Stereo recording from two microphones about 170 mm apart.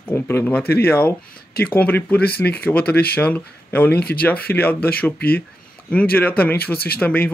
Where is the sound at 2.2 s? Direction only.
65° left (ahead or behind).